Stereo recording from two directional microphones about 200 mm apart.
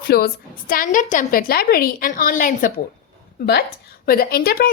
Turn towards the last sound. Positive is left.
turn(degrees=50)  # may be behind; listen again after turning